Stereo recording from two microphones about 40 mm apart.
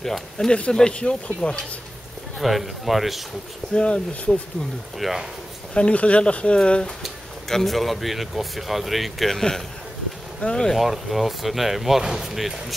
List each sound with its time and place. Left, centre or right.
0.5 s speech: left
2.3 s speech: centre
3.7 s speech: left
4.9 s speech: centre
5.8 s speech: left
7.0 s speech: centre
10.4 s speech: centre
10.8 s speech: centre